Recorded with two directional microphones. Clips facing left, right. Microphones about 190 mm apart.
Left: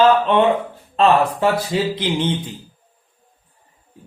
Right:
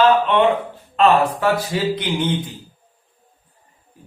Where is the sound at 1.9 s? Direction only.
30° left (ahead or behind).